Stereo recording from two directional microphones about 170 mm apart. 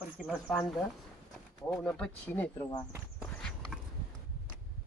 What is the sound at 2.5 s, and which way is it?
Speech, 25° left (ahead or behind).